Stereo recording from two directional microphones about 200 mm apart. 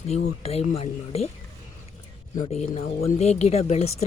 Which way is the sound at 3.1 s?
35° left (ahead or behind).